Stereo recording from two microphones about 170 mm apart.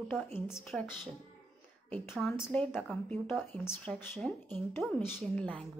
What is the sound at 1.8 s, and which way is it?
Speech, 10° left (ahead or behind).